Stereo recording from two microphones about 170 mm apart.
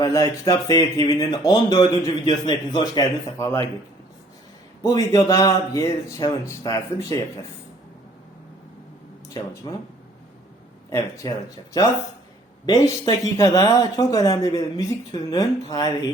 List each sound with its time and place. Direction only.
0.0 s speech: 20° left (ahead or behind)
4.8 s speech: 20° left (ahead or behind)
9.7 s speech: 25° left (ahead or behind)
10.8 s speech: 20° left (ahead or behind)